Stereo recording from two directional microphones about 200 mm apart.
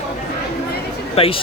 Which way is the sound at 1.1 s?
30° left (ahead or behind).